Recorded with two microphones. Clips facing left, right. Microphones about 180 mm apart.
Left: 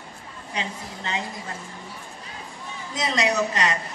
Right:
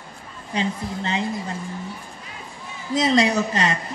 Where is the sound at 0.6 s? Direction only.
30° right (ahead or behind).